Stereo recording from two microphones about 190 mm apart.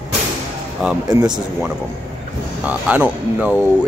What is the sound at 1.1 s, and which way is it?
Speech, 20° right (ahead or behind).